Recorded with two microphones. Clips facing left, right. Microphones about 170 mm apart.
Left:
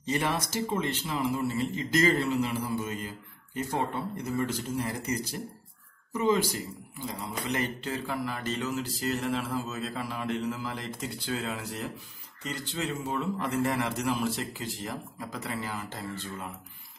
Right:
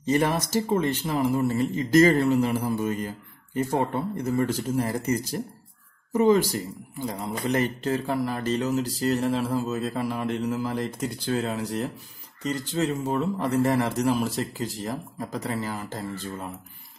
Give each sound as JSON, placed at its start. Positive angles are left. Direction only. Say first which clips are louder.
{"t": 0.0, "sound": "speech", "louder": "right 6 dB", "side_deg": -45}
{"t": 6.1, "sound": "a man's voice", "louder": "right 6 dB", "side_deg": -50}